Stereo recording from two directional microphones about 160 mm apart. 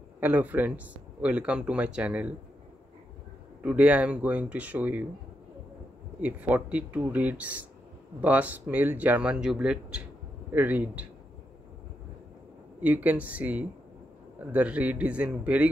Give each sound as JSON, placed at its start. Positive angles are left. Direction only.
{"t": 0.2, "sound": "speech", "side_deg": -10}
{"t": 3.6, "sound": "speech", "side_deg": -10}
{"t": 6.2, "sound": "speech", "side_deg": -10}
{"t": 12.8, "sound": "speech", "side_deg": -10}